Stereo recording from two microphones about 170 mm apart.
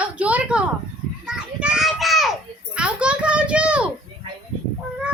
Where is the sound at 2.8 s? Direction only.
5° right (ahead or behind).